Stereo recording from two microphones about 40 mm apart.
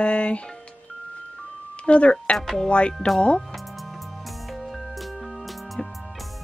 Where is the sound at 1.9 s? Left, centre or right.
Left.